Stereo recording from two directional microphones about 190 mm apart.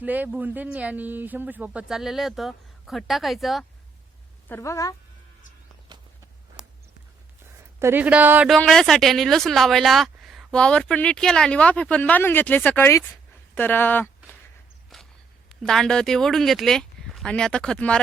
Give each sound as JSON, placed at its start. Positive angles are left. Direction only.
{"t": 0.0, "sound": "speech", "side_deg": -10}
{"t": 4.4, "sound": "a woman's voice", "side_deg": 15}
{"t": 6.6, "sound": "a sound", "side_deg": -5}
{"t": 7.8, "sound": "speech", "side_deg": -10}
{"t": 8.5, "sound": "speech", "side_deg": 0}
{"t": 14.9, "sound": "walk", "side_deg": 0}
{"t": 15.6, "sound": "speech", "side_deg": 5}